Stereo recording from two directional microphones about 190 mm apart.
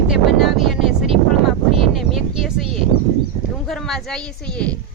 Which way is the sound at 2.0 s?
Centre (ahead or behind).